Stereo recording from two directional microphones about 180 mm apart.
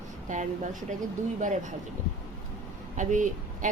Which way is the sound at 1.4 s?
45° right (ahead or behind).